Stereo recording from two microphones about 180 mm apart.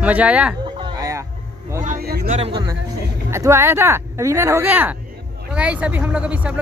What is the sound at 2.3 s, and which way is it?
Speech, 30° right (ahead or behind).